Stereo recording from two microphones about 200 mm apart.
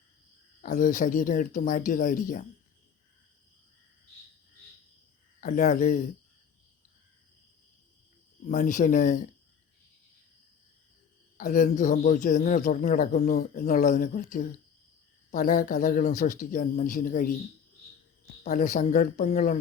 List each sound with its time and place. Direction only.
0.6 s a man's voice: 40° left (ahead or behind)
5.4 s speech: 35° left (ahead or behind)
8.4 s a man's voice: 40° left (ahead or behind)
11.3 s a man's voice: 40° left (ahead or behind)
18.4 s a man's voice: 40° left (ahead or behind)